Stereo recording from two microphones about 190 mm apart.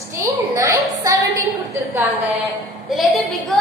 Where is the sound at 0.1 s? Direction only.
15° right (ahead or behind).